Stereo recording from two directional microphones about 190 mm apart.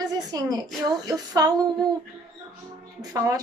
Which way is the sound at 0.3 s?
20° right (ahead or behind).